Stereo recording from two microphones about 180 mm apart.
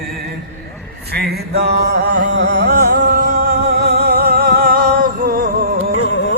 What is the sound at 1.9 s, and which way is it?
Music, 50° right (ahead or behind).